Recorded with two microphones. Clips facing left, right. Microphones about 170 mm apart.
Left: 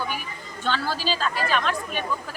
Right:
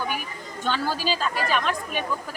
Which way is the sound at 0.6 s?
15° right (ahead or behind).